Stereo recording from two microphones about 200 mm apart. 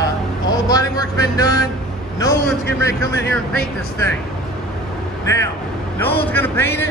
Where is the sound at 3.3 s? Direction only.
5° left (ahead or behind).